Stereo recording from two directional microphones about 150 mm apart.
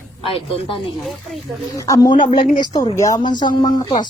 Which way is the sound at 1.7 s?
20° left (ahead or behind).